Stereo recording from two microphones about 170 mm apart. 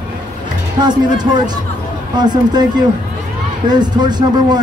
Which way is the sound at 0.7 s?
25° right (ahead or behind).